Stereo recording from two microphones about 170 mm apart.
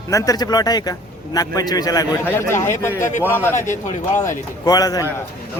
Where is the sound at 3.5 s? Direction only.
45° left (ahead or behind).